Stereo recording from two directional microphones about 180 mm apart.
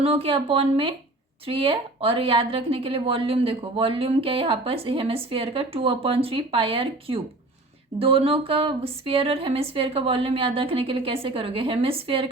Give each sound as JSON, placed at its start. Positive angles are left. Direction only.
{"t": 0.0, "sound": "speech", "side_deg": -30}